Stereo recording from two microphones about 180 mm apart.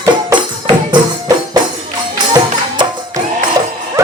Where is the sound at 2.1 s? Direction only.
25° right (ahead or behind).